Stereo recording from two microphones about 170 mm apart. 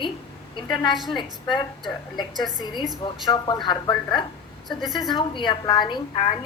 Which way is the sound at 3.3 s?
25° left (ahead or behind).